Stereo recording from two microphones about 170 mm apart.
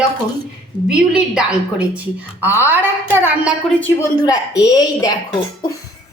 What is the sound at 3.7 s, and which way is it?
Speech, 10° left (ahead or behind).